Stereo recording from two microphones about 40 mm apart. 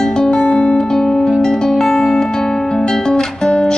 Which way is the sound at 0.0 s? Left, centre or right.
Centre.